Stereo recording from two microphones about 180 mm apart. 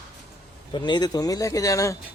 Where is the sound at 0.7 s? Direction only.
25° left (ahead or behind).